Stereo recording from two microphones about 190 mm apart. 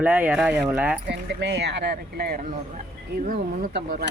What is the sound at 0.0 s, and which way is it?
Speech, 5° right (ahead or behind).